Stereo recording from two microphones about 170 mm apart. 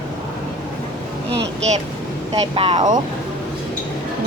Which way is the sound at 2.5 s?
35° right (ahead or behind).